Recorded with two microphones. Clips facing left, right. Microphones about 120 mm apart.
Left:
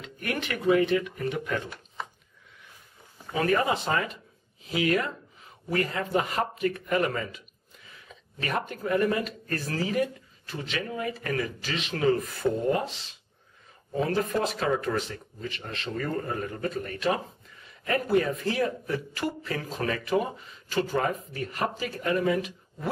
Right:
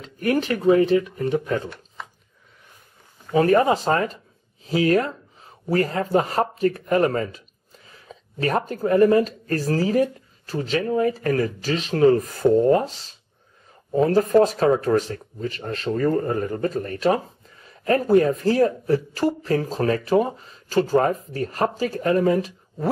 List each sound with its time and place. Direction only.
0.0 s speech: 35° right (ahead or behind)
3.3 s speech: 35° right (ahead or behind)